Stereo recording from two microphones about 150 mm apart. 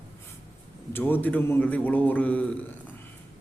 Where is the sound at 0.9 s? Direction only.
15° left (ahead or behind).